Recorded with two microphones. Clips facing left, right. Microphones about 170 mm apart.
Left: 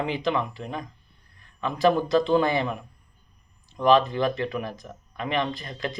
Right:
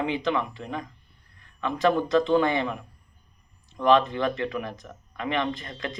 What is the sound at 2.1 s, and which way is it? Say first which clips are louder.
Speech: even; 35° left (ahead or behind).